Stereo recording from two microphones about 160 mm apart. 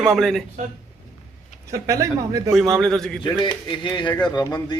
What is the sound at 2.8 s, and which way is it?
Speech, centre (ahead or behind).